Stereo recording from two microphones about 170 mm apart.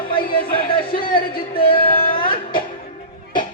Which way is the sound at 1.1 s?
60° left (ahead or behind).